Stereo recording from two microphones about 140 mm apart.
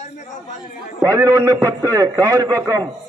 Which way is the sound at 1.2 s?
20° right (ahead or behind).